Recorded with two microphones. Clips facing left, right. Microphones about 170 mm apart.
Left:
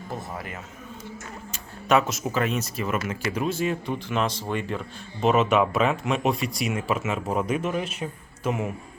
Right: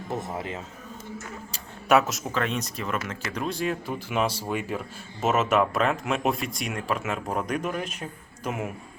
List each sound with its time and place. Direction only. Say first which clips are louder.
0.1 s speech: right 3 dB; 25° right (ahead or behind)
1.9 s speech: even; centre (ahead or behind)